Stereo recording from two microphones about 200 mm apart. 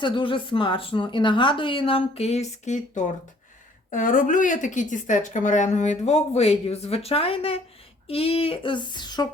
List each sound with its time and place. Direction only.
0.0 s speech: 25° left (ahead or behind)